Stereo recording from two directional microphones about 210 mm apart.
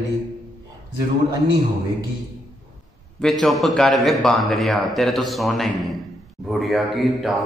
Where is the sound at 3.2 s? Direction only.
Centre (ahead or behind).